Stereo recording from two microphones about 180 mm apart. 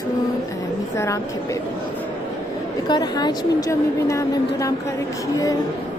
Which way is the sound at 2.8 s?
25° left (ahead or behind).